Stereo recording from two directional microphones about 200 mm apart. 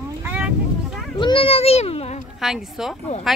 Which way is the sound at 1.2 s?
25° left (ahead or behind).